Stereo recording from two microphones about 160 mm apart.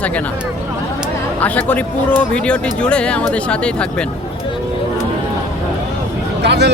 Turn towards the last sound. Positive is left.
turn(degrees=-90)